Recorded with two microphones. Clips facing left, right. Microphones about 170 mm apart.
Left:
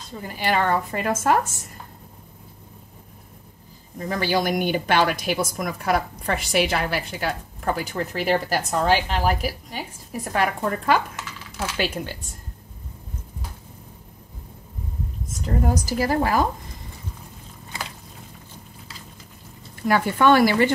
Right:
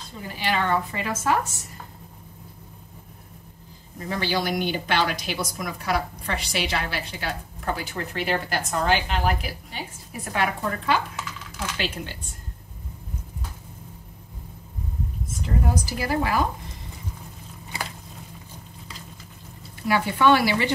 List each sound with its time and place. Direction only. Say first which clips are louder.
0.4 s a woman's voice: left 2 dB; 45° left (ahead or behind)
4.2 s a woman's voice: left 3 dB; 50° left (ahead or behind)
11.2 s typing: left 2 dB; centre (ahead or behind)
15.4 s a woman's voice: left 3 dB; 45° left (ahead or behind)
19.9 s a woman's voice: left 2 dB; 50° left (ahead or behind)